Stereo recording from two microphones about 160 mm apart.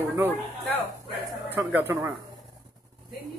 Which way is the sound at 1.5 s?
15° right (ahead or behind).